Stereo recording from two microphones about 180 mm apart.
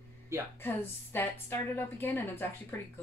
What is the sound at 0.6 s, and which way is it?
A woman's voice, 10° left (ahead or behind).